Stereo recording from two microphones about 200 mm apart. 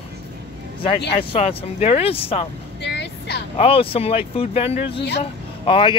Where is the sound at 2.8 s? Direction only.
55° left (ahead or behind).